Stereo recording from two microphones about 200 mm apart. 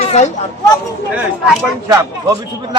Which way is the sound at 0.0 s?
35° left (ahead or behind).